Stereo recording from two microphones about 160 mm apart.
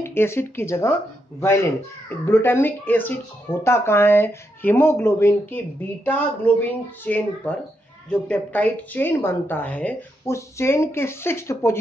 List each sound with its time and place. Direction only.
0.0 s speech: 15° left (ahead or behind)